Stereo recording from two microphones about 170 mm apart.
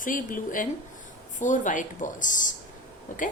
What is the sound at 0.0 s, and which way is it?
Speech, 50° left (ahead or behind).